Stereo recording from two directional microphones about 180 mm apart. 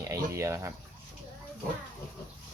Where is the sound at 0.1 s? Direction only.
15° right (ahead or behind).